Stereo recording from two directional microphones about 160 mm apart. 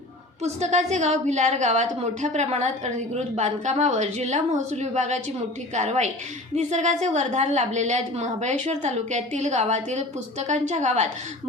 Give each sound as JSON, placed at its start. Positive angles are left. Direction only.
{"t": 0.4, "sound": "a woman's voice", "side_deg": -45}